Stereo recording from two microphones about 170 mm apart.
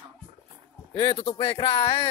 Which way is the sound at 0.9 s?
30° left (ahead or behind).